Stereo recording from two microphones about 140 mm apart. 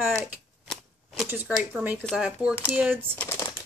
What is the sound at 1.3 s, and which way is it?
Speech, 15° right (ahead or behind).